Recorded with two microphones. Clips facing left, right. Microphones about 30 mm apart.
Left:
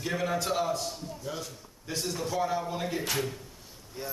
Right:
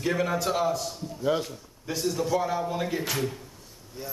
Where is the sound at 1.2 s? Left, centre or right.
Right.